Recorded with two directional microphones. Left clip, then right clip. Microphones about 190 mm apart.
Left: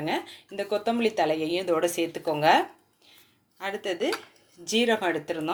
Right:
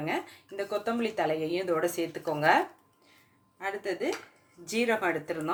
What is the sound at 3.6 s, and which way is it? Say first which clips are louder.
Speech: left 3 dB; 30° left (ahead or behind).